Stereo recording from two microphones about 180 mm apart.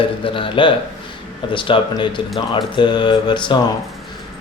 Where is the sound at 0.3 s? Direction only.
30° left (ahead or behind).